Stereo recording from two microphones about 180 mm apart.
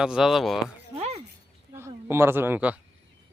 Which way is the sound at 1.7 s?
15° right (ahead or behind).